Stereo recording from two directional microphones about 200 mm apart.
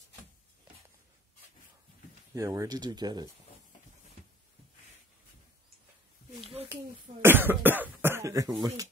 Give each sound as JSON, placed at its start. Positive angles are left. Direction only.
{"t": 2.3, "sound": "speech", "side_deg": -15}
{"t": 6.4, "sound": "a sound", "side_deg": -30}
{"t": 6.7, "sound": "cough", "side_deg": -10}